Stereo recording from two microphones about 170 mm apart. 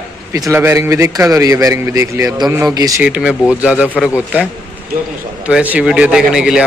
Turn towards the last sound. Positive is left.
turn(degrees=-5)  # may be behind; listen again after turning